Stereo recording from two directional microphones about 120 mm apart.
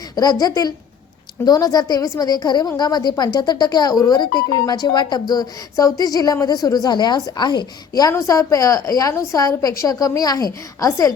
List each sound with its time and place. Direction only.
0.2 s a woman's voice: 35° left (ahead or behind)